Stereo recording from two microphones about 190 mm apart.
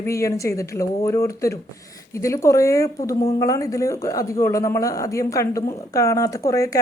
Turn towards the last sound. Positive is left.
turn(degrees=15)  # may be behind; listen again after turning